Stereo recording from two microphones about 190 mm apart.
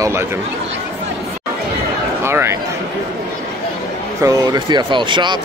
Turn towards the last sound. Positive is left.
turn(degrees=-25)  # may be behind; listen again after turning